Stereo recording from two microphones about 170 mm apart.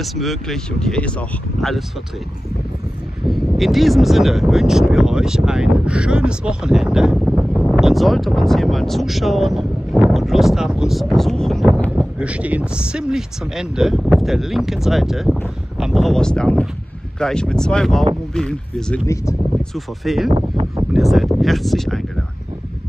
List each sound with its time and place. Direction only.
0.0 s speech: centre (ahead or behind)
3.3 s speech: centre (ahead or behind)
20.2 s speech: 35° right (ahead or behind)
20.9 s speech: centre (ahead or behind)